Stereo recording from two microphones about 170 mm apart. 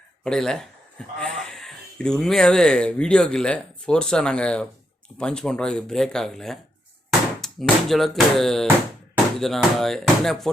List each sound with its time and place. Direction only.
0.3 s speech: 5° left (ahead or behind)